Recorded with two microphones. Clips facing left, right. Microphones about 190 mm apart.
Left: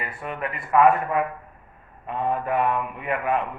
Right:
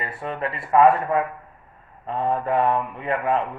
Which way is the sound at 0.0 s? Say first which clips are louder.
Right 3 dB; 30° right (ahead or behind).